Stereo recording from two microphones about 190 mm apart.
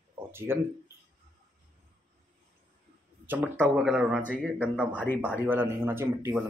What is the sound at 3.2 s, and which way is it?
Speech, 10° right (ahead or behind).